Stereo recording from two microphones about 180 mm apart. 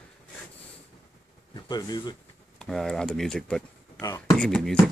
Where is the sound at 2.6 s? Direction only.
5° left (ahead or behind).